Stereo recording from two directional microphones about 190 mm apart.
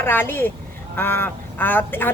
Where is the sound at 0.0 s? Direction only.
10° left (ahead or behind).